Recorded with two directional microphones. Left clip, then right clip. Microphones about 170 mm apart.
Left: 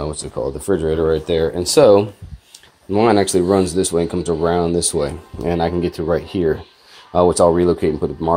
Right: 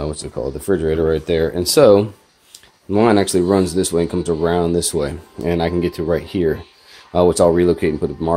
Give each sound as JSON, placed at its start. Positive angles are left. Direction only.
{"t": 0.0, "sound": "speech", "side_deg": -25}